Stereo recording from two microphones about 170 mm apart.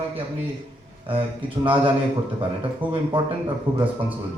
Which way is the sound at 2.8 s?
30° right (ahead or behind).